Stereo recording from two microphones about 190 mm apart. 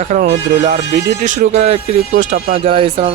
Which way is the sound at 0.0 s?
40° right (ahead or behind).